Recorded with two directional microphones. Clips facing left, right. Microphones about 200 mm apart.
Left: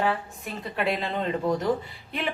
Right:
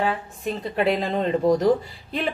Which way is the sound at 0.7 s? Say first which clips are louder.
Right 5 dB; 35° right (ahead or behind).